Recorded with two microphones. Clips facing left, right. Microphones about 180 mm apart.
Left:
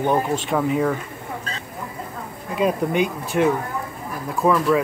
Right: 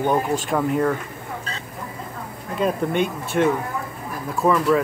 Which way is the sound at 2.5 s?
Centre (ahead or behind).